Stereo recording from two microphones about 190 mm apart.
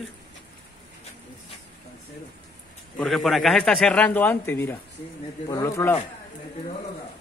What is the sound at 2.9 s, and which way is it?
A man's voice, centre (ahead or behind).